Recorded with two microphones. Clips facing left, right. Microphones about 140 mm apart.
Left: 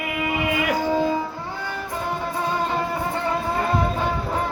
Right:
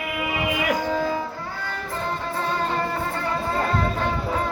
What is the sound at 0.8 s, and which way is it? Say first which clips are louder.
Music: left 3 dB; 15° left (ahead or behind).